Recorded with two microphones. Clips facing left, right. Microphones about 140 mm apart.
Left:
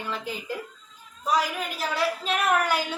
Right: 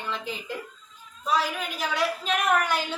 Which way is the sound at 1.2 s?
10° left (ahead or behind).